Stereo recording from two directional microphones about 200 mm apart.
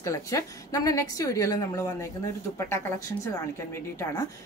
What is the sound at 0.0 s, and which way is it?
A woman's voice, 15° left (ahead or behind).